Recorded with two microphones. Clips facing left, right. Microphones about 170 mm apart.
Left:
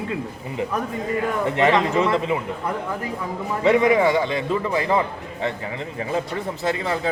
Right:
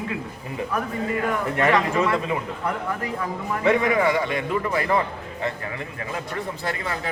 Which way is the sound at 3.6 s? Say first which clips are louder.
Left 3 dB; 25° left (ahead or behind).